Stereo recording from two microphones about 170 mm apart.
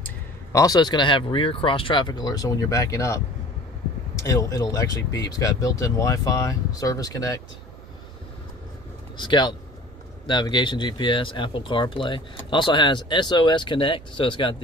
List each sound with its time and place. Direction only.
0.0 s speech: 20° left (ahead or behind)
4.2 s speech: 20° left (ahead or behind)
9.1 s speech: 25° left (ahead or behind)